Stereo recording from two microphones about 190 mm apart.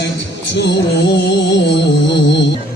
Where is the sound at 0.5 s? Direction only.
65° left (ahead or behind).